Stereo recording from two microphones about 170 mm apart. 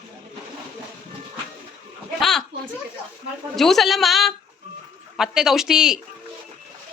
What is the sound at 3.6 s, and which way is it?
A woman's voice, centre (ahead or behind).